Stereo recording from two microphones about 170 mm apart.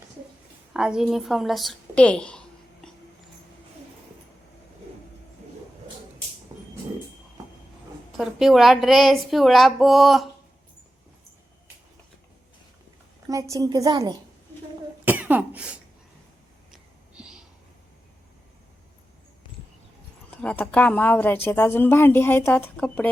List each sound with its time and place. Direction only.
0.7 s a woman's voice: 5° right (ahead or behind)
6.5 s a sound: 20° right (ahead or behind)
8.2 s speech: centre (ahead or behind)
13.2 s a woman's voice: 20° right (ahead or behind)
15.0 s cough: 10° right (ahead or behind)
16.7 s a sound: 5° right (ahead or behind)
20.4 s a woman's voice: 5° left (ahead or behind)